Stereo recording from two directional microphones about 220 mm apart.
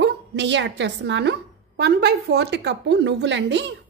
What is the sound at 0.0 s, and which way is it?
A woman's voice, 55° right (ahead or behind).